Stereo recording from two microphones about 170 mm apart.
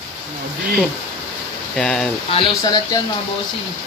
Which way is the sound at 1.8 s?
5° left (ahead or behind).